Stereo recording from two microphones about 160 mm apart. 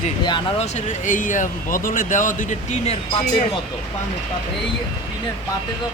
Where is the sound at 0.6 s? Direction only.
45° left (ahead or behind).